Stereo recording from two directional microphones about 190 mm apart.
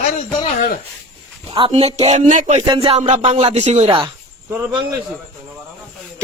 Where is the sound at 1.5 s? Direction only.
30° right (ahead or behind).